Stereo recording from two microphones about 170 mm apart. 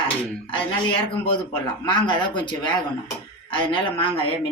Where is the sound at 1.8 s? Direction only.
30° left (ahead or behind).